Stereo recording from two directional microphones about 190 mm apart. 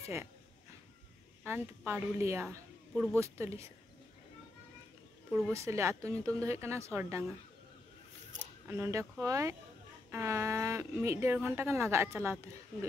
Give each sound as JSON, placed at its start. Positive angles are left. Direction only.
{"t": 1.4, "sound": "a woman's voice", "side_deg": -10}
{"t": 2.9, "sound": "speech", "side_deg": 0}
{"t": 3.2, "sound": "a woman's voice", "side_deg": -15}
{"t": 5.5, "sound": "a woman's voice", "side_deg": -15}
{"t": 8.6, "sound": "a woman's voice", "side_deg": -15}